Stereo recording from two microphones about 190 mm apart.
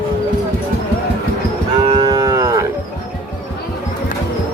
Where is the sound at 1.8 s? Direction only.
25° right (ahead or behind).